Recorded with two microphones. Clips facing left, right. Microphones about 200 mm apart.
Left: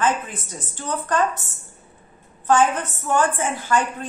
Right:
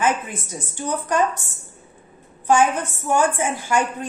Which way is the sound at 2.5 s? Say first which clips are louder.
Right 1 dB; 10° right (ahead or behind).